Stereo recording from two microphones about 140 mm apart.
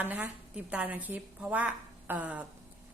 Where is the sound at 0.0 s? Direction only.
10° right (ahead or behind).